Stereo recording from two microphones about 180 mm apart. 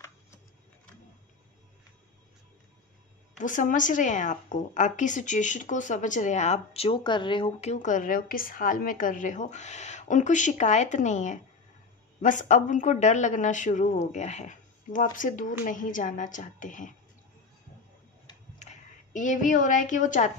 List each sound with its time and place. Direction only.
3.3 s a woman's voice: 45° left (ahead or behind)
18.6 s a woman's voice: 40° left (ahead or behind)